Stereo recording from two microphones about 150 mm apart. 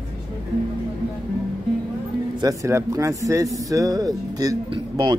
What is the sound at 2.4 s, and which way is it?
Speech, 20° right (ahead or behind).